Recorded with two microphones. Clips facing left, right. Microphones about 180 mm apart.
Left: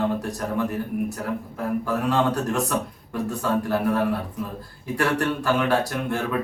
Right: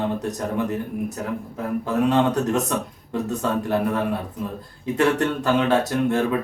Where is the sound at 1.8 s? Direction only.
20° right (ahead or behind).